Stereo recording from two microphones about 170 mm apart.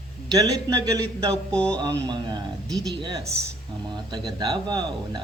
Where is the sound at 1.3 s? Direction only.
5° left (ahead or behind).